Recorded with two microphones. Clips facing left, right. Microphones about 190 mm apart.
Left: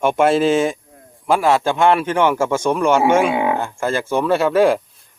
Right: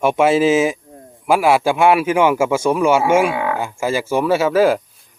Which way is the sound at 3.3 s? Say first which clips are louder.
Left 3 dB; 20° left (ahead or behind).